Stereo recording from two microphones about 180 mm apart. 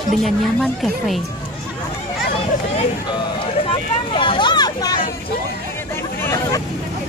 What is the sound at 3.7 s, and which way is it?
Vehicle, 30° left (ahead or behind).